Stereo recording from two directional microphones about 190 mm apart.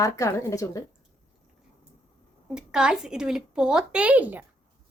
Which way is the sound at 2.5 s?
5° right (ahead or behind).